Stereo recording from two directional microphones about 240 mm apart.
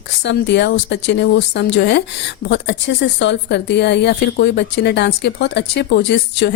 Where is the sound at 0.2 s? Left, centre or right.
Left.